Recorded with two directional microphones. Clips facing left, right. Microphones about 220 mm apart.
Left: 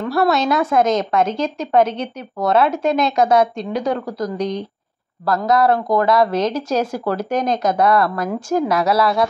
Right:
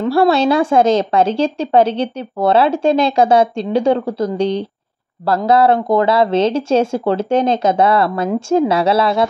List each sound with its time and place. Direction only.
0.0 s speech: 30° right (ahead or behind)